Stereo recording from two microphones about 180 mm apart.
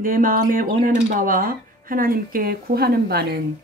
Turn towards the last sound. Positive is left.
turn(degrees=-60)  # may be behind; listen again after turning